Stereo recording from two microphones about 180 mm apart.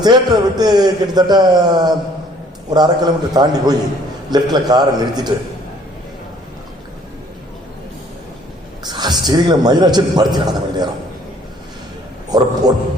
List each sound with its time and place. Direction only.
0.0 s a man's voice: 20° right (ahead or behind)
8.8 s a man's voice: 25° right (ahead or behind)
12.3 s a man's voice: 20° right (ahead or behind)